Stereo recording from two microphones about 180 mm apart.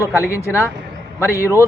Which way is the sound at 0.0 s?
15° left (ahead or behind).